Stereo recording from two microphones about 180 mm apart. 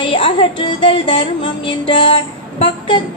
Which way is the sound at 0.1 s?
30° left (ahead or behind).